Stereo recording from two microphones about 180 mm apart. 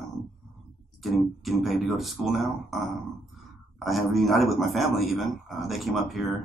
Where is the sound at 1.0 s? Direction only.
Centre (ahead or behind).